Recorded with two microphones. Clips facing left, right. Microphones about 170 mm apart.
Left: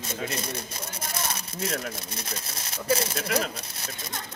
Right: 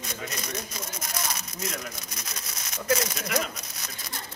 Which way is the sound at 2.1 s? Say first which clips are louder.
Left 4 dB; 30° left (ahead or behind).